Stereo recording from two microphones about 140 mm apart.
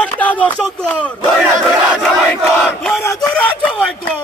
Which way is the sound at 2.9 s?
Centre (ahead or behind).